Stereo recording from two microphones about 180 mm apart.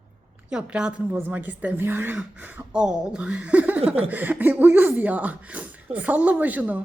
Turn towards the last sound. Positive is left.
turn(degrees=-10)  # may be behind; listen again after turning